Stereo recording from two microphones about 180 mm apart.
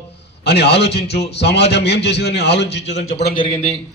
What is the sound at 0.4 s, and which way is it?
A man's voice, 65° left (ahead or behind).